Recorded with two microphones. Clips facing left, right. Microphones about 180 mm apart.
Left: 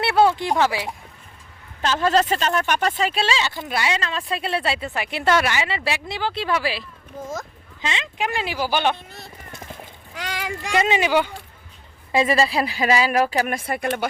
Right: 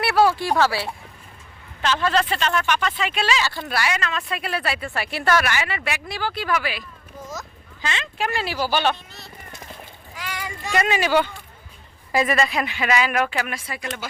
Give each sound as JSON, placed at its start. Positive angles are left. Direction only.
{"t": 0.0, "sound": "speech", "side_deg": 25}
{"t": 1.8, "sound": "a woman's voice", "side_deg": 40}
{"t": 7.8, "sound": "speech", "side_deg": 20}
{"t": 9.1, "sound": "a sound", "side_deg": 55}
{"t": 10.2, "sound": "a sound", "side_deg": 85}
{"t": 10.8, "sound": "speech", "side_deg": 20}
{"t": 12.1, "sound": "a woman's voice", "side_deg": 25}
{"t": 13.5, "sound": "speech", "side_deg": 55}